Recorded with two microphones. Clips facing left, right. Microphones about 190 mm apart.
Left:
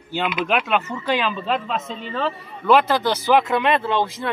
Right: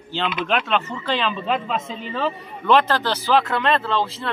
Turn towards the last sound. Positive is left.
turn(degrees=15)  # may be behind; listen again after turning